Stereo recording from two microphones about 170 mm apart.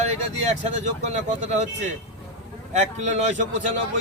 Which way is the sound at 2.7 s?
45° right (ahead or behind).